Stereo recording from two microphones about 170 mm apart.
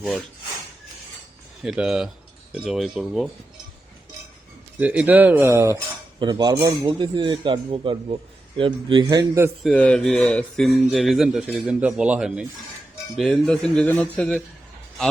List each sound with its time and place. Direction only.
1.6 s speech: 5° right (ahead or behind)
4.8 s speech: 10° right (ahead or behind)
9.6 s speech: 5° left (ahead or behind)